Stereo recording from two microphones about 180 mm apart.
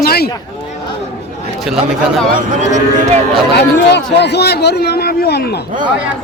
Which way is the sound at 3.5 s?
70° left (ahead or behind).